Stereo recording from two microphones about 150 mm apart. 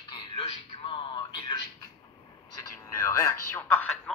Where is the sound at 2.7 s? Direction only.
20° left (ahead or behind).